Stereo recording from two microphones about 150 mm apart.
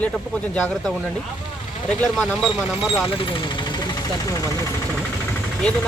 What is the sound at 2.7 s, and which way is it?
Speech, 35° left (ahead or behind).